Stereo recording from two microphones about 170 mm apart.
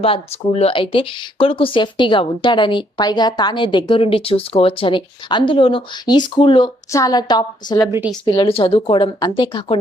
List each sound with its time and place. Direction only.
0.0 s speech: 35° left (ahead or behind)
7.9 s a woman's voice: 15° right (ahead or behind)
8.2 s speech: 30° left (ahead or behind)